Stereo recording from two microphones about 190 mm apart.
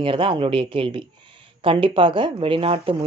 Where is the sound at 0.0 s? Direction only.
25° right (ahead or behind).